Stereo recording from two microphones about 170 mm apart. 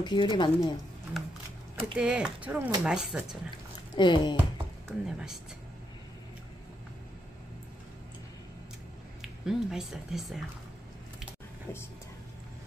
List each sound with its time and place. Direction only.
0.0 s speech: 25° left (ahead or behind)
1.1 s sewing machine: centre (ahead or behind)
2.0 s speech: 5° right (ahead or behind)
3.9 s speech: 25° left (ahead or behind)
5.0 s speech: 5° right (ahead or behind)
9.2 s speech: 5° right (ahead or behind)